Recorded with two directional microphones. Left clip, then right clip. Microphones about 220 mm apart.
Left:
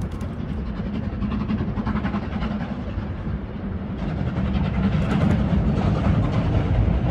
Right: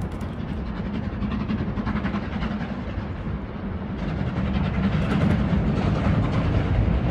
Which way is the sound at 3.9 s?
Centre (ahead or behind).